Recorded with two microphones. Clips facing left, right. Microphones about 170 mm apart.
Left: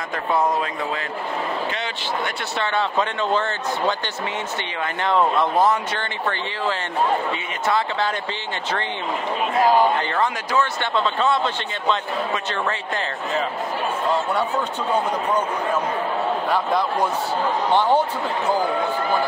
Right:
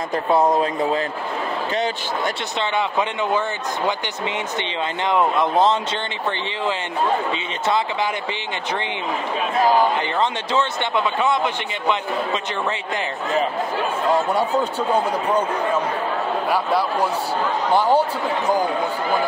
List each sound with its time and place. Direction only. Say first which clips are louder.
0.6 s a man's voice: right 6 dB; 35° right (ahead or behind)
2.6 s speech: even; 15° right (ahead or behind)
5.0 s speech: even; 15° right (ahead or behind)
10.1 s speech: right 1 dB; 20° right (ahead or behind)
14.1 s speech: right 5 dB; 10° right (ahead or behind)
16.4 s speech: right 3 dB; 10° right (ahead or behind)